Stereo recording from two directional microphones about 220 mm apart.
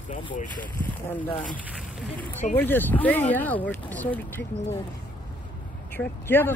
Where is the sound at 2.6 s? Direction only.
10° left (ahead or behind).